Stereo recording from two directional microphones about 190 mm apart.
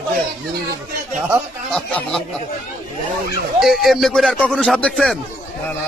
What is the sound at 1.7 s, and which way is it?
Speech, centre (ahead or behind).